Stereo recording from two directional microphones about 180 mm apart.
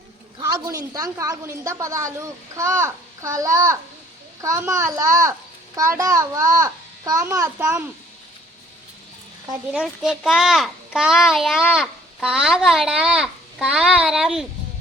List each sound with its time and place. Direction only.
0.3 s a child's voice: 20° right (ahead or behind)
9.7 s a child's voice: 5° right (ahead or behind)